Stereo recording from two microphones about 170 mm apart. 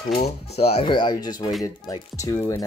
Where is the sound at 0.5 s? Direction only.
35° left (ahead or behind).